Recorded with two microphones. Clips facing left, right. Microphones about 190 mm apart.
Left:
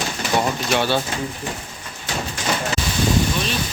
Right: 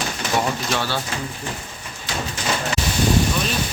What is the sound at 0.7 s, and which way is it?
Speech, 20° left (ahead or behind).